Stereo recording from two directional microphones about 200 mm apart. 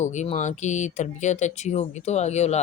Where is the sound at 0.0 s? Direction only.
35° left (ahead or behind).